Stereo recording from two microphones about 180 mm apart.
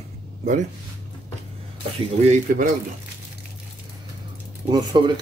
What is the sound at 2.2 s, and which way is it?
Speech, 45° right (ahead or behind).